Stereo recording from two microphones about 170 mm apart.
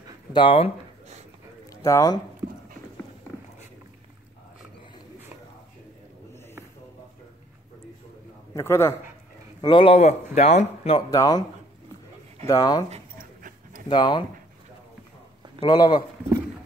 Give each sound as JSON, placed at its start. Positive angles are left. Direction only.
{"t": 0.3, "sound": "speech", "side_deg": 30}
{"t": 1.8, "sound": "speech", "side_deg": 20}
{"t": 8.5, "sound": "a man's voice", "side_deg": 15}
{"t": 9.6, "sound": "a man's voice", "side_deg": 30}
{"t": 11.0, "sound": "speech", "side_deg": 20}
{"t": 12.4, "sound": "speech", "side_deg": 20}
{"t": 12.9, "sound": "dog", "side_deg": -50}
{"t": 13.8, "sound": "speech", "side_deg": 25}
{"t": 15.6, "sound": "speech", "side_deg": 25}